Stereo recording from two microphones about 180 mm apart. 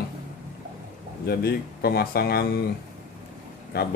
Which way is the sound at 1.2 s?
60° left (ahead or behind).